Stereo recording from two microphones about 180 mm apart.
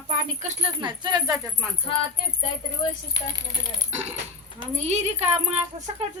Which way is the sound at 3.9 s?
35° right (ahead or behind).